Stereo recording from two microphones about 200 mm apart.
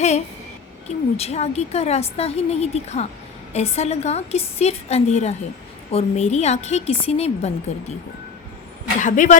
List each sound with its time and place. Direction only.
0.9 s a woman's voice: 30° left (ahead or behind)
9.0 s a woman's voice: 40° left (ahead or behind)